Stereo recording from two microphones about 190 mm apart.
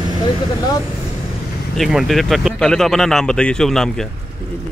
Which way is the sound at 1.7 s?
Centre (ahead or behind).